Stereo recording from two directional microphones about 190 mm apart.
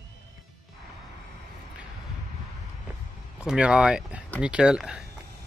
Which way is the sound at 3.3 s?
5° right (ahead or behind).